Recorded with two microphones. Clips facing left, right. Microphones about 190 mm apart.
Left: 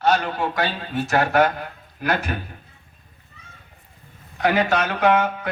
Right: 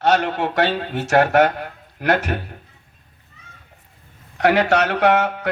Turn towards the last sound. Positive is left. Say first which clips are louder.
# right 2 dB
turn(degrees=-75)  # may be behind; listen again after turning